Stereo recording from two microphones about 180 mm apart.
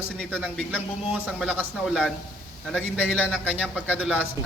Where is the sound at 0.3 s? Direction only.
10° right (ahead or behind).